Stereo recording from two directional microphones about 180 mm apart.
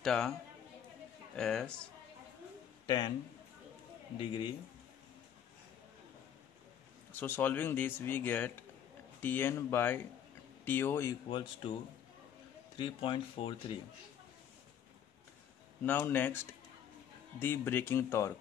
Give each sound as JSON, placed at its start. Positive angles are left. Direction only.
{"t": 0.0, "sound": "a man's voice", "side_deg": 5}
{"t": 1.3, "sound": "speech", "side_deg": 5}
{"t": 4.2, "sound": "speech", "side_deg": 25}
{"t": 7.1, "sound": "speech", "side_deg": 10}
{"t": 11.2, "sound": "speech", "side_deg": 25}
{"t": 12.7, "sound": "speech", "side_deg": 30}
{"t": 15.8, "sound": "speech", "side_deg": 10}
{"t": 17.4, "sound": "speech", "side_deg": 10}